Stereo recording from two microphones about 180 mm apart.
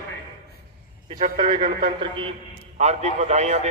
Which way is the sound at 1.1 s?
40° right (ahead or behind).